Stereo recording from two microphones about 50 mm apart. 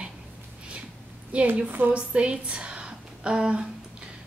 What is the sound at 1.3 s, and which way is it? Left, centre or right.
A woman's voice, right.